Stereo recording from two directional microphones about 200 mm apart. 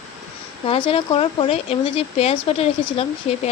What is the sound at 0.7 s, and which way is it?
Speech, 25° left (ahead or behind).